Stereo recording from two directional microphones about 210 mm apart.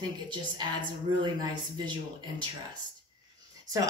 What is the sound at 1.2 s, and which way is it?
Speech, 20° right (ahead or behind).